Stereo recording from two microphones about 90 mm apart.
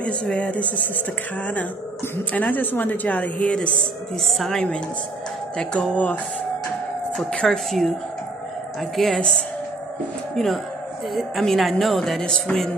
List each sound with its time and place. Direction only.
0.0 s a woman's voice: 10° left (ahead or behind)
2.3 s a woman's voice: 20° left (ahead or behind)
4.3 s music: 5° left (ahead or behind)
5.6 s a woman's voice: 10° left (ahead or behind)
7.2 s music: 5° left (ahead or behind)
8.9 s a woman's voice: 5° left (ahead or behind)
10.3 s music: centre (ahead or behind)